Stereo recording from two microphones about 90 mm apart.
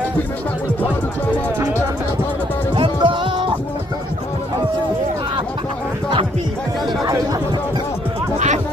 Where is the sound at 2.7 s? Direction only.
65° right (ahead or behind).